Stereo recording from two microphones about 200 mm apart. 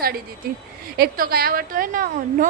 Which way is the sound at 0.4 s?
50° right (ahead or behind).